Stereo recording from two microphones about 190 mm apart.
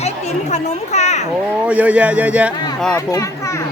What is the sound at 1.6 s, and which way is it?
Speech, 5° right (ahead or behind).